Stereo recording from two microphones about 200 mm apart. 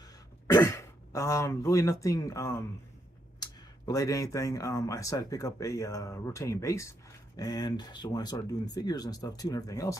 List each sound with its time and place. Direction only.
0.5 s speech: 15° left (ahead or behind)